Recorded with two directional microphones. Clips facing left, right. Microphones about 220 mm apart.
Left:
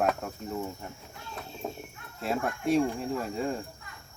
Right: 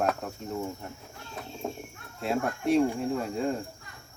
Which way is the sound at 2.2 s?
Centre (ahead or behind).